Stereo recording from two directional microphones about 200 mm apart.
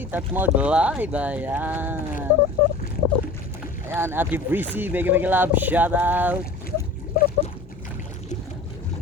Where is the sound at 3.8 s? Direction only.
10° right (ahead or behind).